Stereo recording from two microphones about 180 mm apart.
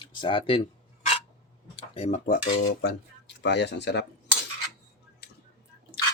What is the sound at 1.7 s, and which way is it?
Speech, 35° left (ahead or behind).